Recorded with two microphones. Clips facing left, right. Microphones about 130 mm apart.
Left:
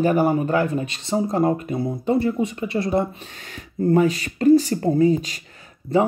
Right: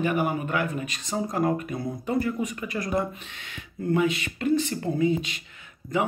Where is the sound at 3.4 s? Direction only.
40° left (ahead or behind).